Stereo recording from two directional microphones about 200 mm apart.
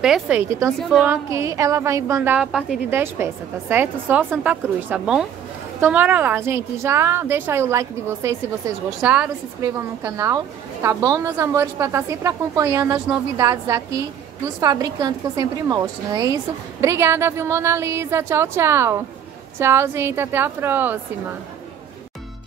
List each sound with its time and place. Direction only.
0.0 s a woman's voice: 5° right (ahead or behind)
1.3 s a woman's voice: 15° right (ahead or behind)